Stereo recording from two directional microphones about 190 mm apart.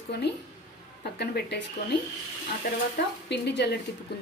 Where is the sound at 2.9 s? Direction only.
60° left (ahead or behind).